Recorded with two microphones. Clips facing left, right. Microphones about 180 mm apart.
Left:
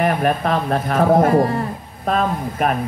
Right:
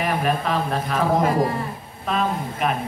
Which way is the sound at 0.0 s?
55° left (ahead or behind).